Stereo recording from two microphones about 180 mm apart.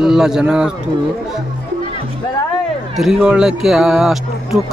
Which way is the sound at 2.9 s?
Centre (ahead or behind).